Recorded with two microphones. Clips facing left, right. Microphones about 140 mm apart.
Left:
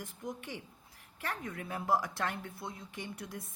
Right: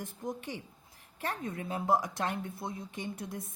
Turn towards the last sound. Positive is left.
turn(degrees=-20)  # may be behind; listen again after turning